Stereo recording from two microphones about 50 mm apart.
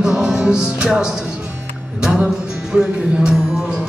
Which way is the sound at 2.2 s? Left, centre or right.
Centre.